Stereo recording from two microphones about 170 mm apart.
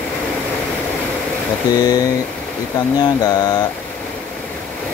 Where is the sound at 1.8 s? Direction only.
20° left (ahead or behind).